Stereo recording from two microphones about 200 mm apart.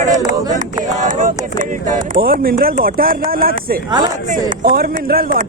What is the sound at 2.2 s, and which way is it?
Speech, 45° right (ahead or behind).